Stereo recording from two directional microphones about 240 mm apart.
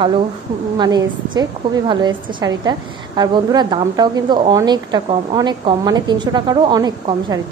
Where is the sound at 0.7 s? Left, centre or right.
Centre.